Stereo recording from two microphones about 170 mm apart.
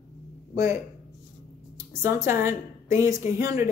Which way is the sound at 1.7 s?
15° right (ahead or behind).